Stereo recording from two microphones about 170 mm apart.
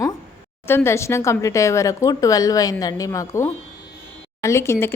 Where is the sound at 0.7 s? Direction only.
15° left (ahead or behind).